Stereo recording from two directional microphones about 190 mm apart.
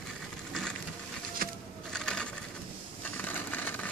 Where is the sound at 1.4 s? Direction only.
50° right (ahead or behind).